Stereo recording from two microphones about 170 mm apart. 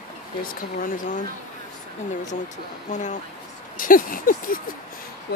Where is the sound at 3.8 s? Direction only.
55° left (ahead or behind).